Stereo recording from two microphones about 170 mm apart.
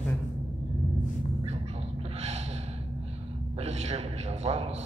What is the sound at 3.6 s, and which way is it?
A man's voice, 40° right (ahead or behind).